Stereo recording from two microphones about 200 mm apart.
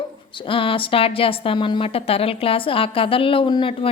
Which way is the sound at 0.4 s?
25° left (ahead or behind).